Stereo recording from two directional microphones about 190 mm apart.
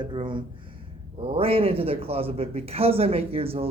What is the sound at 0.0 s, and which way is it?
Speech, 25° right (ahead or behind).